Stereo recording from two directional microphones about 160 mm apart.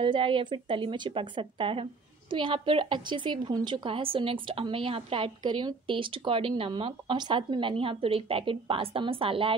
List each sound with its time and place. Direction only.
0.0 s speech: 30° right (ahead or behind)